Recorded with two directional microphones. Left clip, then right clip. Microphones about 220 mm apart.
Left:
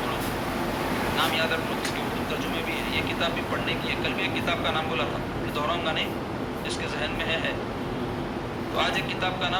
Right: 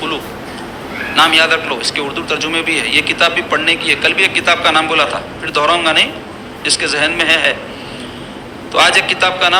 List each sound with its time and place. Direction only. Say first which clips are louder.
1.1 s a man's voice: right 17 dB; 45° right (ahead or behind)
8.7 s speech: right 16 dB; 45° right (ahead or behind)